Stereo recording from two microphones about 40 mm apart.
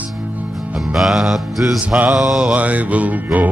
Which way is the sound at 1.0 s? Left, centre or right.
Centre.